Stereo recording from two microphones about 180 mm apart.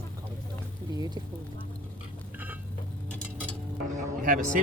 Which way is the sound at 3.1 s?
5° left (ahead or behind).